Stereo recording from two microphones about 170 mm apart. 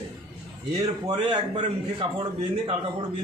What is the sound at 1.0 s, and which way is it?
Speech, 25° right (ahead or behind).